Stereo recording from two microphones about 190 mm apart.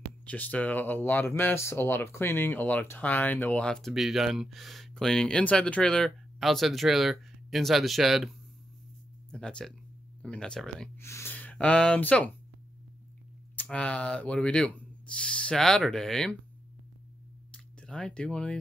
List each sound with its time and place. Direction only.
0.2 s speech: 5° left (ahead or behind)
13.6 s speech: 5° left (ahead or behind)
17.5 s a sound: 5° left (ahead or behind)